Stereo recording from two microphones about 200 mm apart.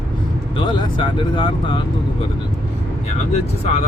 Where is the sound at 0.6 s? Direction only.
25° left (ahead or behind).